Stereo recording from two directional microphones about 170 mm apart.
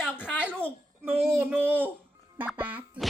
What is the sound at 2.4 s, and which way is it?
Music, 10° right (ahead or behind).